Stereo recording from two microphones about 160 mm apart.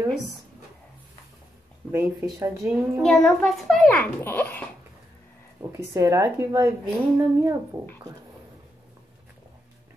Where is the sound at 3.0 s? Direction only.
Centre (ahead or behind).